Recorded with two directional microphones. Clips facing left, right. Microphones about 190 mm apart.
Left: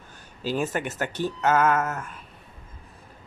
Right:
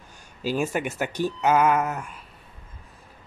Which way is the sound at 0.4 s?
10° right (ahead or behind).